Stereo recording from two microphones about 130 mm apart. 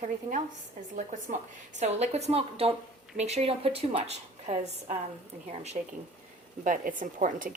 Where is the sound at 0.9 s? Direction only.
80° right; by 5.9 s 60° right (ahead or behind).